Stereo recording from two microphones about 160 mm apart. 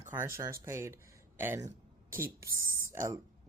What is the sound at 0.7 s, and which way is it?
Speech, 15° right (ahead or behind).